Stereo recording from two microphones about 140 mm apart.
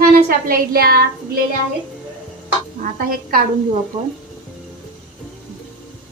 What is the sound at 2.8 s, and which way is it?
Speech, 90° right.